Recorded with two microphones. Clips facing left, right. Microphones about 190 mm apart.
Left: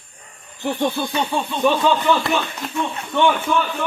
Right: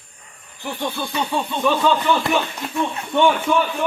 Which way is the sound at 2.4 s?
10° right (ahead or behind).